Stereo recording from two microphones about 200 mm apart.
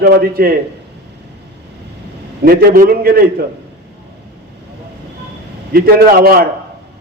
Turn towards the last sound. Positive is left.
turn(degrees=-50)  # may be behind; listen again after turning